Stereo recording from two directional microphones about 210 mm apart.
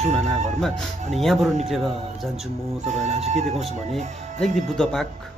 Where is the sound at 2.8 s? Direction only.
30° right (ahead or behind).